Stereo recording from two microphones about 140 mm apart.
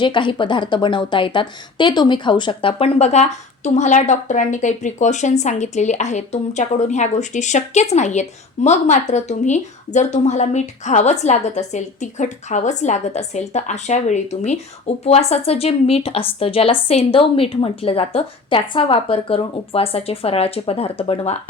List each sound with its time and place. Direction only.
0.0 s a woman's voice: 35° left (ahead or behind)